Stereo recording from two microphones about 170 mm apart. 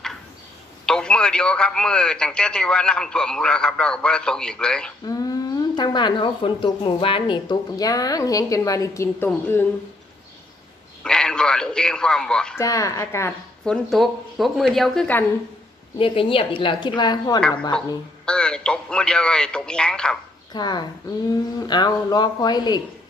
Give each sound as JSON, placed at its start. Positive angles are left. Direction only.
{"t": 0.8, "sound": "a man's voice", "side_deg": 5}
{"t": 5.0, "sound": "speech", "side_deg": 20}
{"t": 11.1, "sound": "a man's voice", "side_deg": 5}
{"t": 12.5, "sound": "speech", "side_deg": 20}
{"t": 13.7, "sound": "a man's voice", "side_deg": 0}
{"t": 16.0, "sound": "a woman's voice", "side_deg": 30}
{"t": 17.4, "sound": "a man's voice", "side_deg": 5}
{"t": 20.5, "sound": "speech", "side_deg": 25}